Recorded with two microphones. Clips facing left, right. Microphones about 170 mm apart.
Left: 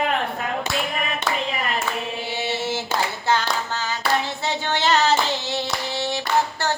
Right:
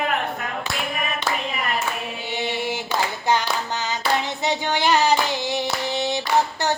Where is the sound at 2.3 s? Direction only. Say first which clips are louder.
Right 1 dB; 15° right (ahead or behind).